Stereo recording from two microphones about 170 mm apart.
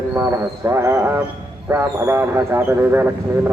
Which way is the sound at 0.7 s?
15° right (ahead or behind).